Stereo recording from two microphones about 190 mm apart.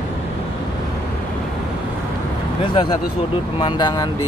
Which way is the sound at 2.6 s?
25° left (ahead or behind).